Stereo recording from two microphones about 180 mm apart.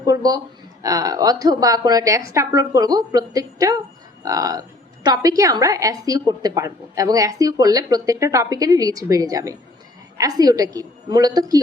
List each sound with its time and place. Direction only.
0.0 s a woman's voice: 20° right (ahead or behind)